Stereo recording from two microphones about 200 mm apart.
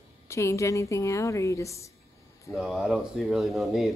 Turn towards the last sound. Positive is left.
turn(degrees=0)  # may be behind; listen again after turning